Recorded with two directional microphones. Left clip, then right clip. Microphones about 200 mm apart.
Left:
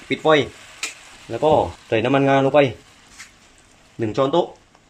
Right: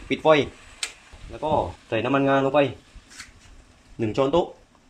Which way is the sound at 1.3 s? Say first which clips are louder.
Left 7 dB; 25° left (ahead or behind).